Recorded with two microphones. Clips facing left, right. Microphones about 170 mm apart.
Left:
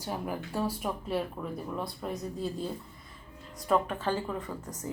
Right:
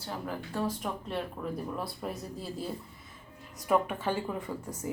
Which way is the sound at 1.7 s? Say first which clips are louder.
Left 1 dB; 5° right (ahead or behind).